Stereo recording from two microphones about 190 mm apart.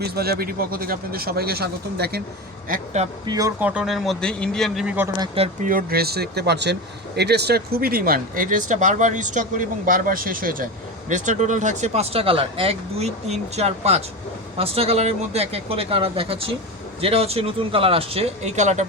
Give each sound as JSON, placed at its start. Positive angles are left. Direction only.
{"t": 0.0, "sound": "speech", "side_deg": -55}
{"t": 2.6, "sound": "speech", "side_deg": -40}
{"t": 3.2, "sound": "speech", "side_deg": -20}
{"t": 3.6, "sound": "speech", "side_deg": -5}
{"t": 5.2, "sound": "speech", "side_deg": -30}
{"t": 5.6, "sound": "speech", "side_deg": -50}